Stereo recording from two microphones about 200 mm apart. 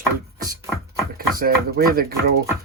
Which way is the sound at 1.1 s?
45° right (ahead or behind).